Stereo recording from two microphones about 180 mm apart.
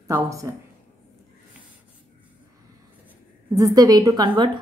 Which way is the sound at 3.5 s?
20° right (ahead or behind).